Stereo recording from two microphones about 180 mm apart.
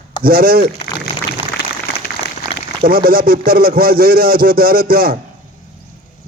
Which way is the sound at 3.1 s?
55° right (ahead or behind).